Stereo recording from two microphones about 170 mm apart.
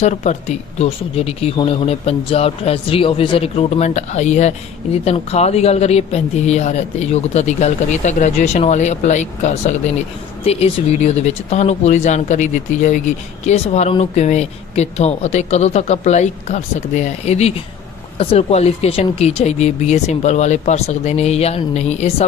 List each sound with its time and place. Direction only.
0.0 s speech: 40° left (ahead or behind)